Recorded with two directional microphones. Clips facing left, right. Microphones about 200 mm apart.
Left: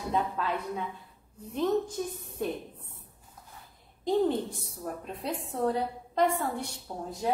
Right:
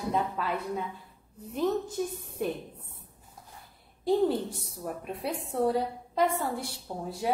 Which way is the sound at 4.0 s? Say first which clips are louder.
Right 1 dB; 10° right (ahead or behind).